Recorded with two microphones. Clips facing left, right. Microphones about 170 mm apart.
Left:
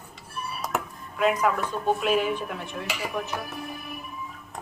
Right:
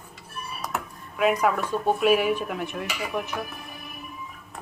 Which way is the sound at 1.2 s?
10° right (ahead or behind).